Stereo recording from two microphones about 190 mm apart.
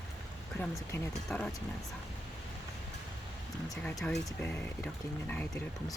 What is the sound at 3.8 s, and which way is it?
Speech, 5° left (ahead or behind).